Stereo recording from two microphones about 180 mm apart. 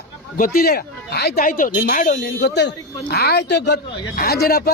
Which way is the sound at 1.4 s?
45° left (ahead or behind).